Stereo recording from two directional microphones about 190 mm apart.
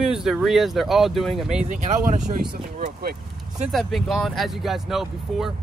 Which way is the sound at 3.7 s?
Centre (ahead or behind).